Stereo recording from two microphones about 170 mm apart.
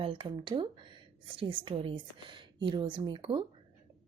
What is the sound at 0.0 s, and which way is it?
Speech, 30° right (ahead or behind).